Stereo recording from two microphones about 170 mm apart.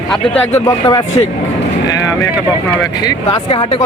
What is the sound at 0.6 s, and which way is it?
Speech, 20° left (ahead or behind).